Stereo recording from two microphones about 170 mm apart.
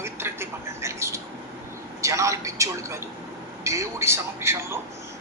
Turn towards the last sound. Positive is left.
turn(degrees=-15)  # may be behind; listen again after turning